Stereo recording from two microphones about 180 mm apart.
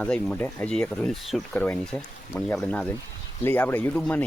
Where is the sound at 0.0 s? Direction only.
5° left (ahead or behind).